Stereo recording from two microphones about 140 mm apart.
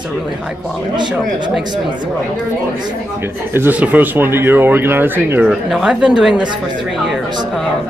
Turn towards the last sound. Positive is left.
turn(degrees=-5)  # may be behind; listen again after turning